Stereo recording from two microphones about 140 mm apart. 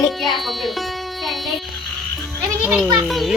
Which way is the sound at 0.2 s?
Centre (ahead or behind).